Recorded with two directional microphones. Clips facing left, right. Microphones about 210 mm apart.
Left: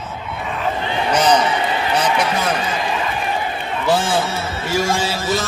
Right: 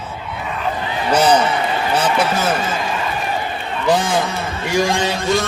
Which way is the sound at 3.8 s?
15° right (ahead or behind).